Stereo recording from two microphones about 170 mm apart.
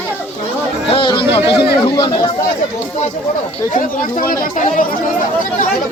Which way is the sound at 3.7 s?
55° left (ahead or behind).